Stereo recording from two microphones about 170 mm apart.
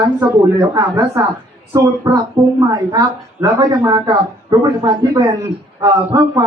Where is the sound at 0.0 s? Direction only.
20° right (ahead or behind).